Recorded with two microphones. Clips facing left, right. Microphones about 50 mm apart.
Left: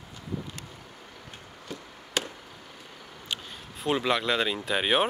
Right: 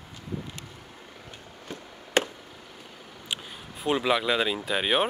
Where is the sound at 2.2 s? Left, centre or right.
Right.